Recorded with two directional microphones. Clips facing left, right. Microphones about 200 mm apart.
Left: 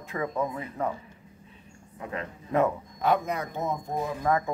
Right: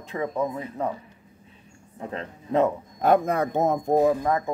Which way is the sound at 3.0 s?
50° right (ahead or behind).